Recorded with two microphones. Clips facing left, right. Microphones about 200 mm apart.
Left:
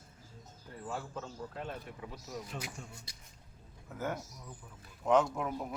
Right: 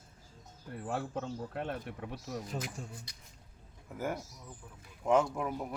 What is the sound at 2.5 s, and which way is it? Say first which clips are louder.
Speech: right 4 dB; 40° right (ahead or behind).